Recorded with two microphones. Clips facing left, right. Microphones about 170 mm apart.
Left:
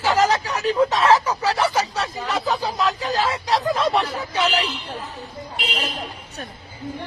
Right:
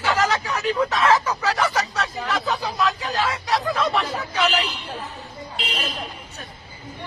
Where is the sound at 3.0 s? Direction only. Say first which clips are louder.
Left 2 dB; 35° left (ahead or behind).